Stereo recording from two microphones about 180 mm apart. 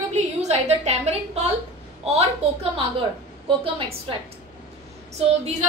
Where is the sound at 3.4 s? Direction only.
30° right (ahead or behind).